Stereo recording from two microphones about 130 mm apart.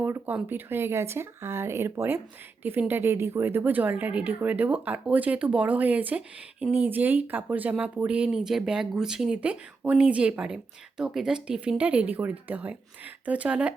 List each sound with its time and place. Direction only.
0.0 s a woman's voice: 15° right (ahead or behind)